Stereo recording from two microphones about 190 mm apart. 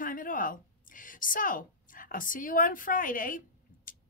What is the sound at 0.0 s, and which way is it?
A woman's voice, 45° left (ahead or behind).